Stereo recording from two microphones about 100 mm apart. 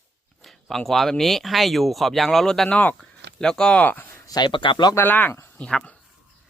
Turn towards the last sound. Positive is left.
turn(degrees=10)  # may be behind; listen again after turning